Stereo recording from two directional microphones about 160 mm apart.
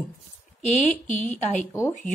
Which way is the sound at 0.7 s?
45° left (ahead or behind).